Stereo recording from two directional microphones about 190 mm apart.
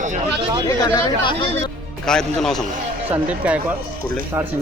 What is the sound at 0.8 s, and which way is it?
Speech, 20° left (ahead or behind).